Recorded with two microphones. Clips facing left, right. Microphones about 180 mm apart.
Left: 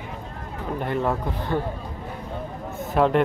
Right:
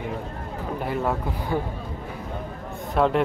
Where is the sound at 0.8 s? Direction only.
5° right (ahead or behind).